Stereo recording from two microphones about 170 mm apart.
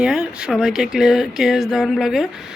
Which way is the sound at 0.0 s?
5° right (ahead or behind).